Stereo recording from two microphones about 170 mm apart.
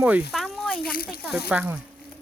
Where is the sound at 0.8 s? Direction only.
60° left (ahead or behind).